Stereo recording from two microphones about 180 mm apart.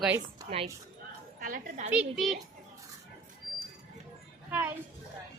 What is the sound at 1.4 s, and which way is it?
Speech, 45° right (ahead or behind).